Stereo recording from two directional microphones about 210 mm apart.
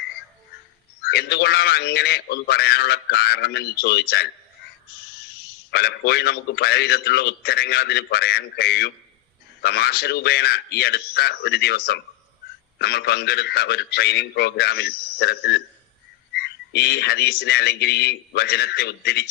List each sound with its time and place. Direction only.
1.0 s a man's voice: 50° left (ahead or behind)
5.7 s a man's voice: 50° left (ahead or behind)